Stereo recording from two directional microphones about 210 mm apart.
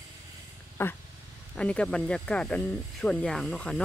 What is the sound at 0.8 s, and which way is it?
Speech, 10° left (ahead or behind).